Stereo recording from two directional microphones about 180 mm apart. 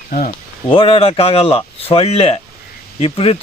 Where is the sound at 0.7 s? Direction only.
30° left (ahead or behind).